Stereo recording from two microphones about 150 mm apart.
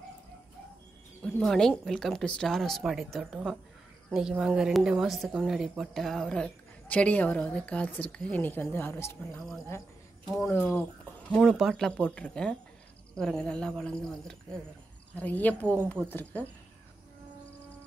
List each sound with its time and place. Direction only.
1.4 s speech: 5° left (ahead or behind)
11.2 s speech: centre (ahead or behind)